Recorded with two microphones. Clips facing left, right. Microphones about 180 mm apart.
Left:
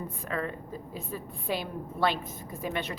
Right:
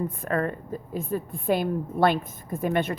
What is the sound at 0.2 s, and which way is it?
A woman's voice, 50° right (ahead or behind).